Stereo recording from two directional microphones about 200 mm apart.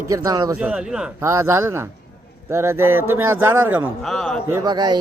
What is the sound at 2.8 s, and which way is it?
Speech, 90° right.